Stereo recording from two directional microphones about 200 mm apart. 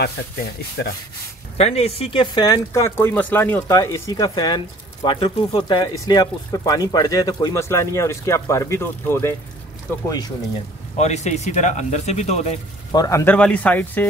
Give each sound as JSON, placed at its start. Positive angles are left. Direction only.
{"t": 1.6, "sound": "speech", "side_deg": 30}
{"t": 11.0, "sound": "speech", "side_deg": 35}
{"t": 12.9, "sound": "speech", "side_deg": 15}